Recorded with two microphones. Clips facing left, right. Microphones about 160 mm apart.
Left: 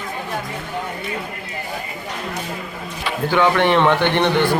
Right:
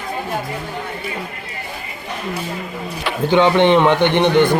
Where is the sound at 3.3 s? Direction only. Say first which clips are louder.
Right 4 dB; 20° right (ahead or behind).